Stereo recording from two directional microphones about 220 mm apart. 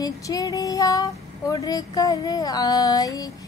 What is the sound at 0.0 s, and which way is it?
Child singing, 15° left (ahead or behind).